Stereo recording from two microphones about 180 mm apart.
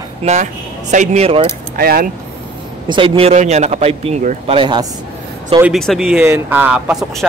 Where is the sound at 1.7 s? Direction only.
55° right (ahead or behind).